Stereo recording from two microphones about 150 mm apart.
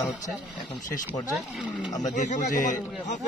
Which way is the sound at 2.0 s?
55° left (ahead or behind).